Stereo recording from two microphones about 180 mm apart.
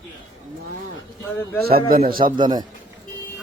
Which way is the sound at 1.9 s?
55° right (ahead or behind).